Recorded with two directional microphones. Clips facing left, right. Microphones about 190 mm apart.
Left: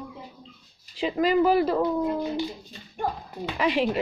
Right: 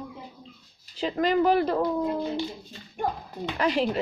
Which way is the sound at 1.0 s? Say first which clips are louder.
Left 2 dB; 5° left (ahead or behind).